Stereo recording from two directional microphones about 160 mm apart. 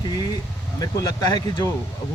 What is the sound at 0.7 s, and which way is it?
Speech, 25° left (ahead or behind).